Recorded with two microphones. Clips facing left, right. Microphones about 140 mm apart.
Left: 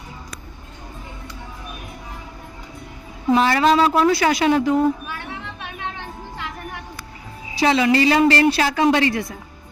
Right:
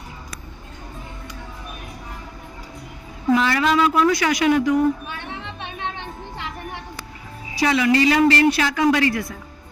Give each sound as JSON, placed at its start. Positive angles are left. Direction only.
{"t": 3.3, "sound": "a woman's voice", "side_deg": 35}
{"t": 5.0, "sound": "a sound", "side_deg": -20}
{"t": 7.5, "sound": "a woman's voice", "side_deg": 30}